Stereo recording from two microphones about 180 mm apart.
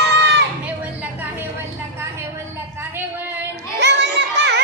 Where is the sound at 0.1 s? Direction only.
70° right (ahead or behind).